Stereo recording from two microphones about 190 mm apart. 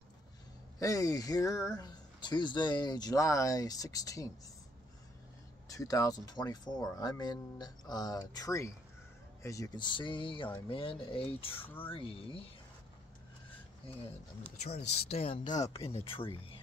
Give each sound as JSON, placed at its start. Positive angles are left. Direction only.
{"t": 0.7, "sound": "speech", "side_deg": 15}
{"t": 5.7, "sound": "speech", "side_deg": 20}
{"t": 11.6, "sound": "speech", "side_deg": 10}
{"t": 11.9, "sound": "speech", "side_deg": 30}
{"t": 15.0, "sound": "speech", "side_deg": 30}